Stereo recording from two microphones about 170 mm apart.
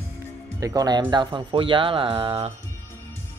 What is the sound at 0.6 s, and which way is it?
Speech, 20° right (ahead or behind).